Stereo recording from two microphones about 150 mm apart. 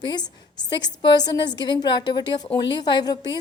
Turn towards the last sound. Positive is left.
turn(degrees=30)  # may be behind; listen again after turning